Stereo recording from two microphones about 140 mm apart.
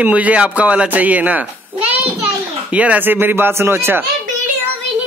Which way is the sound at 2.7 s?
10° right (ahead or behind).